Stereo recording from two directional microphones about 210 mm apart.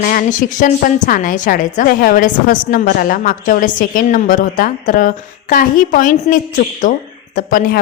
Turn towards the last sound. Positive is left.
turn(degrees=40)  # may be behind; listen again after turning